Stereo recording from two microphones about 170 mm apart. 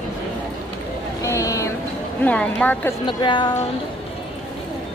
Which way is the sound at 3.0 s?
30° left (ahead or behind).